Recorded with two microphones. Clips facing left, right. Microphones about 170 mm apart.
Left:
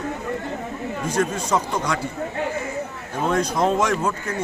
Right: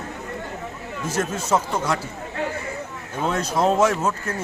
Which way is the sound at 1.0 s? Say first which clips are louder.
Left 1 dB; 5° right (ahead or behind).